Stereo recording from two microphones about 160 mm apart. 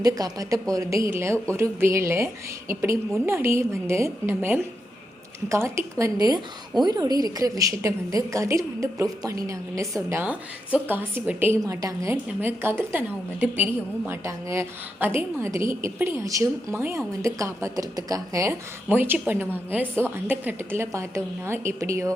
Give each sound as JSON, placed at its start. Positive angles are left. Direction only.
{"t": 0.0, "sound": "a woman's voice", "side_deg": -25}